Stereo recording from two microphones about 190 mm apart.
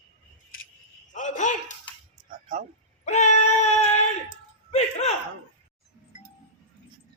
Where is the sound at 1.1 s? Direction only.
40° left (ahead or behind).